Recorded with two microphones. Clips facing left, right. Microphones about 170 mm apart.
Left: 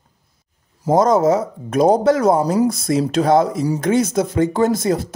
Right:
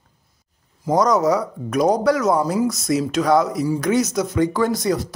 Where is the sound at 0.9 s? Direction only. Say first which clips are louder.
Left 3 dB; 25° left (ahead or behind).